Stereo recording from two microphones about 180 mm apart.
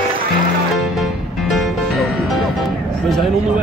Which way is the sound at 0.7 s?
Centre (ahead or behind).